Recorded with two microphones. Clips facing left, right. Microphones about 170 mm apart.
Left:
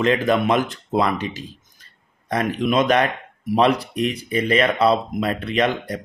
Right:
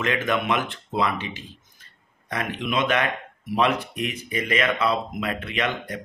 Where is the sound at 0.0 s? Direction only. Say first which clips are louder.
Left 6 dB; 35° left (ahead or behind).